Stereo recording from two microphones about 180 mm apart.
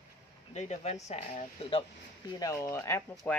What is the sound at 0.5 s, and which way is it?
Speech, 40° left (ahead or behind).